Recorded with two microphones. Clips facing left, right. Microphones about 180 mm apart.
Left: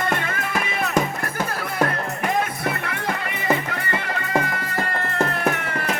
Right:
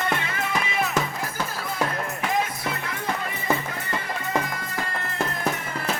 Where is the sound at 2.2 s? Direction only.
60° left (ahead or behind).